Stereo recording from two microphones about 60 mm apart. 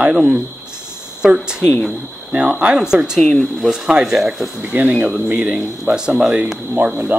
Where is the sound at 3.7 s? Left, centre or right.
Centre.